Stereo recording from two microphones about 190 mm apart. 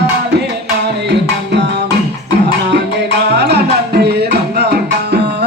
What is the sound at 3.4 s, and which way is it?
Music, 60° right (ahead or behind).